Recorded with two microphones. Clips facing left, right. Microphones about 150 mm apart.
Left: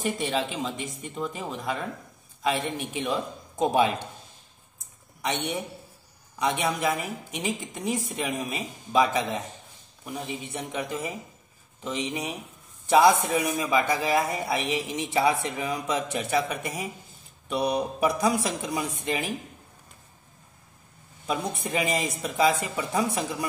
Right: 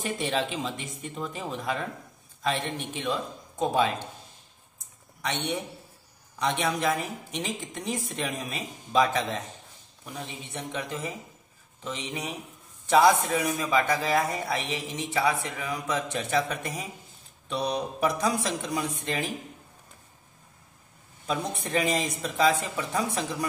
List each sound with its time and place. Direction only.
0.0 s speech: centre (ahead or behind)
5.2 s speech: 15° left (ahead or behind)
21.3 s speech: 10° left (ahead or behind)